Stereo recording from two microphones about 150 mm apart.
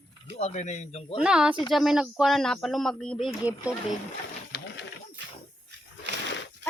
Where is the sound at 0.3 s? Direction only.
50° left (ahead or behind).